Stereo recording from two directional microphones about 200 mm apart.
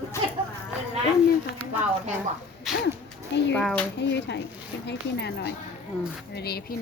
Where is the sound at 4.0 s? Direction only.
60° left (ahead or behind).